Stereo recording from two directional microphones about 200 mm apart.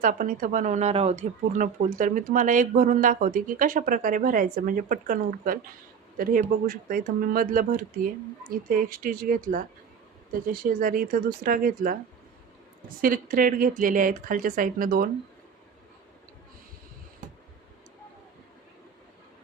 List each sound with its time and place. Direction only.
0.0 s speech: 40° right (ahead or behind)
13.0 s speech: 45° right (ahead or behind)